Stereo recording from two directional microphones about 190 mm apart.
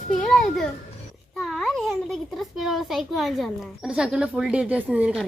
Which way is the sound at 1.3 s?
Centre (ahead or behind).